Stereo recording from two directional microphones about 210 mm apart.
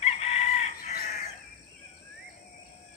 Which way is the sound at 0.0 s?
30° left (ahead or behind).